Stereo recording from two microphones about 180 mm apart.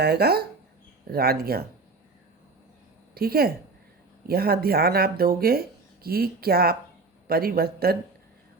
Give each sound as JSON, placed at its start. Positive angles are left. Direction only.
{"t": 0.0, "sound": "speech", "side_deg": -65}
{"t": 3.2, "sound": "speech", "side_deg": -60}